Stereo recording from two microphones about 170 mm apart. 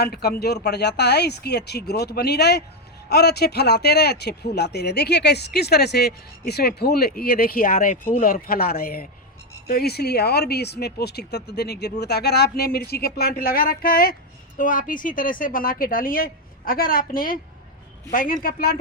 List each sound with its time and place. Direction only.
0.0 s a woman's voice: 70° left (ahead or behind)